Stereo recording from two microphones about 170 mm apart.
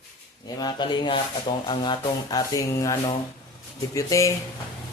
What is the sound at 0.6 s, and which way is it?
Speech, 25° left (ahead or behind).